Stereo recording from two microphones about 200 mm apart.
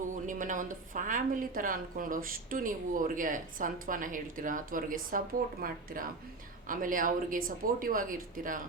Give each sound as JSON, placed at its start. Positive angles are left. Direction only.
{"t": 0.3, "sound": "a woman's voice", "side_deg": -40}